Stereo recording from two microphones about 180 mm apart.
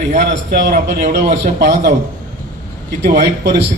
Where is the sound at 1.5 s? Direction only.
60° right (ahead or behind).